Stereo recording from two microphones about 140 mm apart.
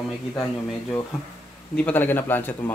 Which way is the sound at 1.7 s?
10° left (ahead or behind).